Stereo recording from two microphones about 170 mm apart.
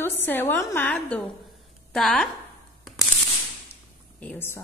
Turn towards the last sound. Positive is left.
turn(degrees=10)  # may be behind; listen again after turning